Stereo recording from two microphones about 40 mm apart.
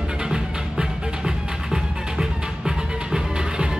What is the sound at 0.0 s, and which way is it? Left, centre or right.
Music, right.